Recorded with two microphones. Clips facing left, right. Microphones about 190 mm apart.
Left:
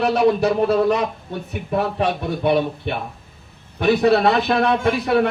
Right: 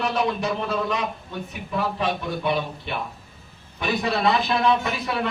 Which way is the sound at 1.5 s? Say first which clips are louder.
Left 5 dB; 60° left (ahead or behind).